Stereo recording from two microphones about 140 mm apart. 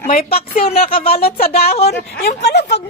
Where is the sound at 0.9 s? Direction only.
90° left.